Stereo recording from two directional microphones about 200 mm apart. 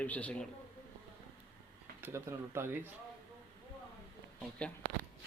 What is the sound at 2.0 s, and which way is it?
Speech, 15° right (ahead or behind).